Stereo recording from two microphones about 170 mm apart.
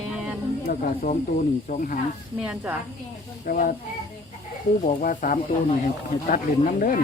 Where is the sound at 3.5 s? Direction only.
55° left (ahead or behind).